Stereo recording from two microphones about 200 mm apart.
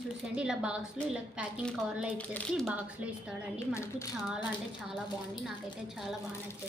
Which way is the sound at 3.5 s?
15° left (ahead or behind).